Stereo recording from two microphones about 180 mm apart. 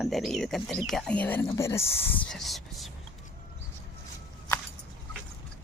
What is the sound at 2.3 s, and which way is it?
Speech, centre (ahead or behind).